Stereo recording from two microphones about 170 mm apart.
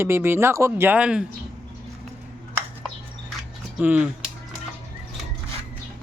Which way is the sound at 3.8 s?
10° right (ahead or behind).